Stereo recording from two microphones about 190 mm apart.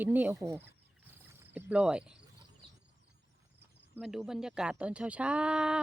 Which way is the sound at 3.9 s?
Centre (ahead or behind).